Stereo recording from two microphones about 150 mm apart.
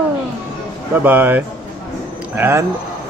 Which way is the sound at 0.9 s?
10° right (ahead or behind).